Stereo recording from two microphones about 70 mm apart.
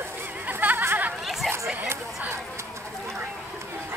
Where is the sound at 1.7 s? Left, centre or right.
Right.